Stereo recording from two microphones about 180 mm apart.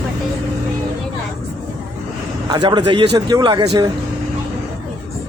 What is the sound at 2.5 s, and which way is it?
A man's voice, 25° right (ahead or behind).